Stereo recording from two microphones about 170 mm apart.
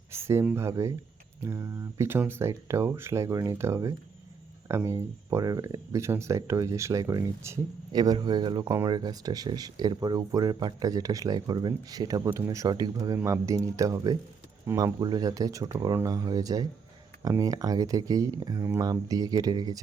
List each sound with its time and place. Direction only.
0.1 s speech: 15° right (ahead or behind)